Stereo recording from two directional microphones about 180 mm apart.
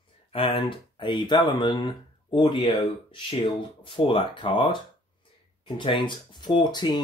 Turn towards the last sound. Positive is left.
turn(degrees=25)  # may be behind; listen again after turning